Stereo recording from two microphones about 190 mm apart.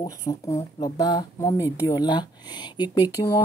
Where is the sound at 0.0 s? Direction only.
20° left (ahead or behind).